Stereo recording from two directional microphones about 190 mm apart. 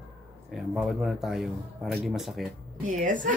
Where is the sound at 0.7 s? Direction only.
Centre (ahead or behind).